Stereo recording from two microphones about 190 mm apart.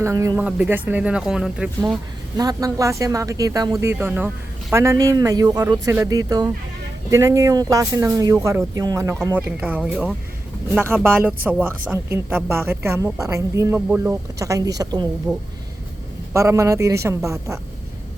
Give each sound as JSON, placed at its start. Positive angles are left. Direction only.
{"t": 0.0, "sound": "speech", "side_deg": -15}
{"t": 2.4, "sound": "speech", "side_deg": -20}
{"t": 9.6, "sound": "speech", "side_deg": -5}
{"t": 16.3, "sound": "speech", "side_deg": -15}